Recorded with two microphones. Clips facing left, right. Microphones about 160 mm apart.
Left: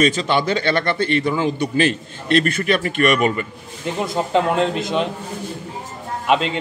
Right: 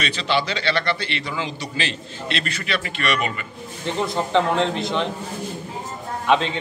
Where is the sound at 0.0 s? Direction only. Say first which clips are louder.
Left 6 dB; 45° left (ahead or behind).